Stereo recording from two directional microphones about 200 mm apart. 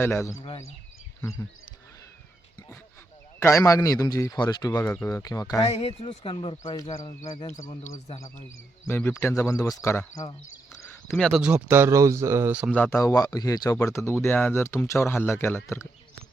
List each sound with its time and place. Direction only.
0.0 s speech: 15° left (ahead or behind)
3.4 s speech: 15° left (ahead or behind)
4.7 s speech: 10° left (ahead or behind)
5.6 s speech: 30° left (ahead or behind)
7.9 s speech: 35° left (ahead or behind)
8.8 s speech: 10° left (ahead or behind); by 12.7 s 5° right (ahead or behind)
12.7 s speech: 10° left (ahead or behind)